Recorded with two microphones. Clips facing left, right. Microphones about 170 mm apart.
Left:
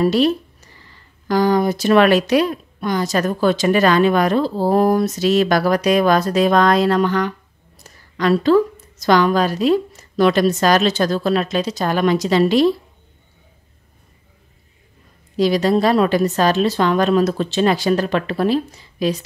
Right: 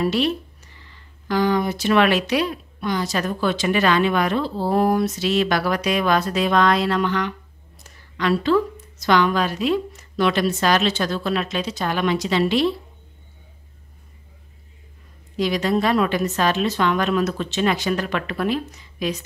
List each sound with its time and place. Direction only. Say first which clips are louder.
0.0 s speech: left 5 dB; 40° left (ahead or behind)
15.3 s speech: left 5 dB; 35° left (ahead or behind)